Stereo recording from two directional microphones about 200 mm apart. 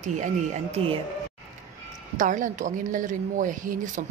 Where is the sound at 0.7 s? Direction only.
30° right (ahead or behind).